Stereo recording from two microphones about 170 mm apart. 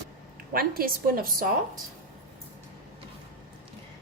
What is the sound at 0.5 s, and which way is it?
A woman's voice, 60° right (ahead or behind).